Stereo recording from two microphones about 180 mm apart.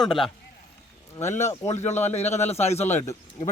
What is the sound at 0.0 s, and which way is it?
Speech, centre (ahead or behind).